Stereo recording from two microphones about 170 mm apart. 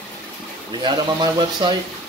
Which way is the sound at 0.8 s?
25° right (ahead or behind).